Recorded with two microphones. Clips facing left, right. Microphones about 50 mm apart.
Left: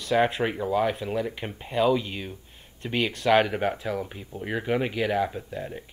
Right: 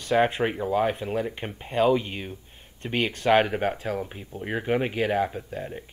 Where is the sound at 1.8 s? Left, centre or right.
Right.